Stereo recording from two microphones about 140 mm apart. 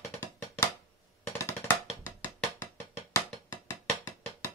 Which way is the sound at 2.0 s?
15° left (ahead or behind).